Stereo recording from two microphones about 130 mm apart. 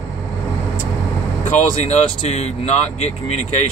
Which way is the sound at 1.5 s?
60° left (ahead or behind).